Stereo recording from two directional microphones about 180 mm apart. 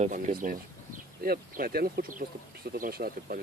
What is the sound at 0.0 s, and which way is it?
Speech, 50° right (ahead or behind).